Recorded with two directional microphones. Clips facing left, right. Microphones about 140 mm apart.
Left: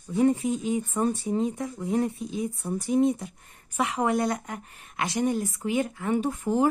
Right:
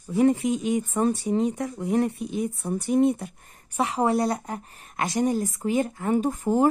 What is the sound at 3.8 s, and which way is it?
A woman's voice, 35° right (ahead or behind).